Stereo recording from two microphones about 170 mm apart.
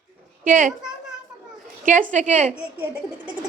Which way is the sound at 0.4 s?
50° right (ahead or behind).